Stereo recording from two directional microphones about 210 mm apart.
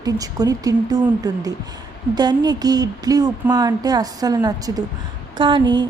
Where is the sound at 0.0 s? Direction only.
15° right (ahead or behind).